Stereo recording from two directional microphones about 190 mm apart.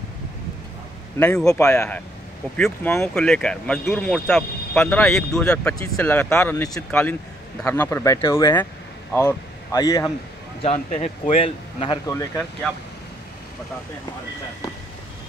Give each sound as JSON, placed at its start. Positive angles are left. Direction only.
{"t": 1.2, "sound": "speech", "side_deg": 10}
{"t": 10.6, "sound": "speech", "side_deg": 40}
{"t": 12.1, "sound": "speech", "side_deg": 15}